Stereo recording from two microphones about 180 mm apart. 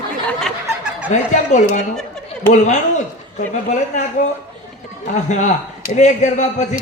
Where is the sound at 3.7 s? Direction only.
40° left (ahead or behind).